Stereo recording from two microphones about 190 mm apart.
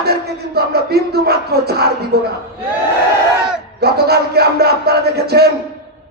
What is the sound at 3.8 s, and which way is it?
Speech, 55° right (ahead or behind).